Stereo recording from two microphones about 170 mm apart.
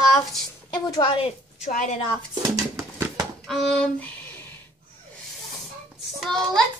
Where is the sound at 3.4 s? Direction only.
Centre (ahead or behind).